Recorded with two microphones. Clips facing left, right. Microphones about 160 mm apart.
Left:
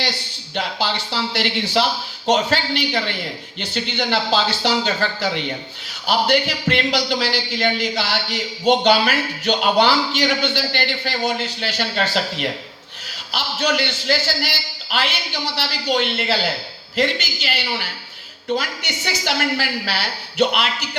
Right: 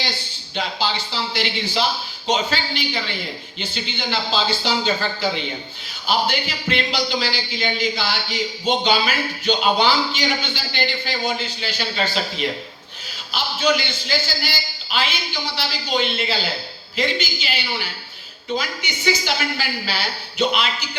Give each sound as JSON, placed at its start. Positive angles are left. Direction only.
{"t": 0.0, "sound": "a man's voice", "side_deg": 70}